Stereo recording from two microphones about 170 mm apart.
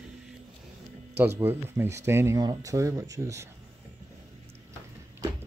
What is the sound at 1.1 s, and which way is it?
Speech, 15° right (ahead or behind).